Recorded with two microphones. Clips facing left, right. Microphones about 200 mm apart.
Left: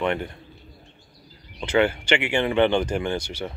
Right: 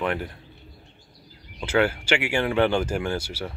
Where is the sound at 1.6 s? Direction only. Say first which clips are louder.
Left 1 dB; 5° right (ahead or behind).